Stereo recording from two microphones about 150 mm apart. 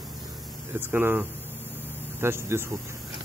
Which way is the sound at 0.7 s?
15° right (ahead or behind).